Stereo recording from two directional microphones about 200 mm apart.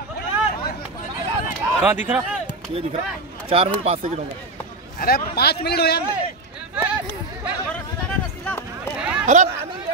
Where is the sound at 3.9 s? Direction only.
35° right (ahead or behind).